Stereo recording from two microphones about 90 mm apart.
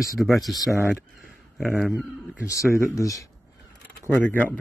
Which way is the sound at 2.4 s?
35° left (ahead or behind).